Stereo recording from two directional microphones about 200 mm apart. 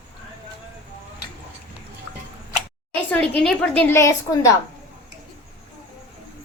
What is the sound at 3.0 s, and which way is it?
A woman's voice, 5° left (ahead or behind).